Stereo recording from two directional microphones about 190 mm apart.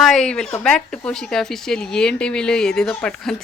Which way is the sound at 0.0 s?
Centre (ahead or behind).